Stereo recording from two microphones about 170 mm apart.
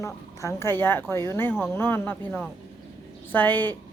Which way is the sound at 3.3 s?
10° left (ahead or behind).